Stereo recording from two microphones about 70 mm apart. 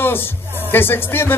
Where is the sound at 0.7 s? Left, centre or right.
Left.